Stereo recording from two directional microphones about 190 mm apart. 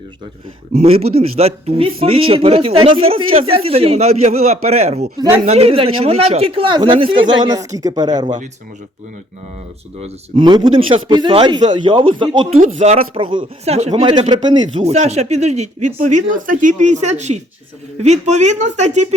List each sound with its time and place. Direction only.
0.7 s speech: 35° right (ahead or behind)
10.0 s speech: 25° right (ahead or behind)
12.5 s speech: 35° right (ahead or behind)
14.1 s speech: 25° right (ahead or behind)
14.8 s speech: 35° right (ahead or behind)